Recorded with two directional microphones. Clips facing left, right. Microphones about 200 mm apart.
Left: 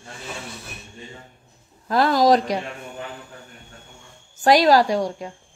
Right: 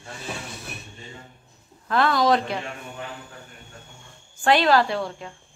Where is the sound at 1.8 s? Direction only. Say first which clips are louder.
Left 3 dB; 40° left (ahead or behind).